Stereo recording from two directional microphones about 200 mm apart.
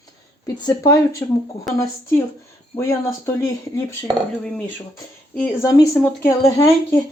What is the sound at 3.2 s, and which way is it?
Speech, 10° left (ahead or behind).